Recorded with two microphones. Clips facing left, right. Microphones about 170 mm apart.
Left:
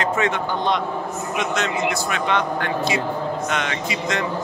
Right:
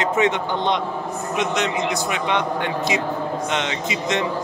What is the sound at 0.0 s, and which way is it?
Speech, 20° right (ahead or behind).